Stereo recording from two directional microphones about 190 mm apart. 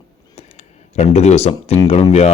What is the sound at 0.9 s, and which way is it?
Speech, 35° left (ahead or behind).